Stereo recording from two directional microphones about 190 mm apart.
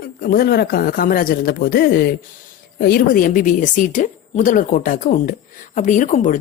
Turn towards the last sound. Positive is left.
turn(degrees=40)  # may be behind; listen again after turning